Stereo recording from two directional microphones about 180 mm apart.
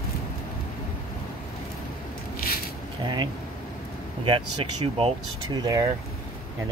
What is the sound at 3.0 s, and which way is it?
Speech, 25° right (ahead or behind).